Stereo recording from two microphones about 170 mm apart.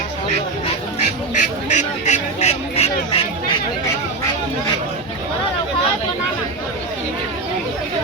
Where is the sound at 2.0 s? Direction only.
40° left (ahead or behind).